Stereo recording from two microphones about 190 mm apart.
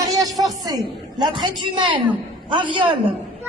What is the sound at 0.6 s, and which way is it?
A woman's voice, 20° right (ahead or behind).